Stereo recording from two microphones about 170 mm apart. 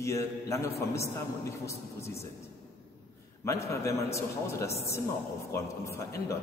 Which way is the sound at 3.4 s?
15° left (ahead or behind).